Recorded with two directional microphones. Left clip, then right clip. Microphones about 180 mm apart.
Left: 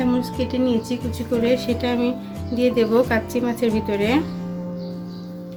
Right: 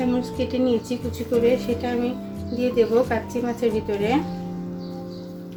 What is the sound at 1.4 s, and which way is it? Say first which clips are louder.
Speech: even; 50° left (ahead or behind).